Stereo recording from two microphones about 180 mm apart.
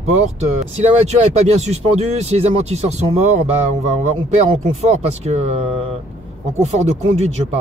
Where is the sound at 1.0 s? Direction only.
35° right (ahead or behind).